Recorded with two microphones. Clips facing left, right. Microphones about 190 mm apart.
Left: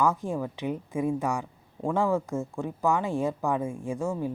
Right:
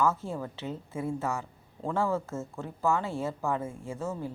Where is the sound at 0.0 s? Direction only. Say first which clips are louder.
Left 2 dB; 15° left (ahead or behind).